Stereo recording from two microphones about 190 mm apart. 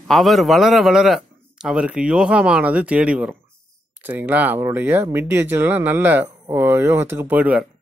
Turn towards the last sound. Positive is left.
turn(degrees=-10)  # may be behind; listen again after turning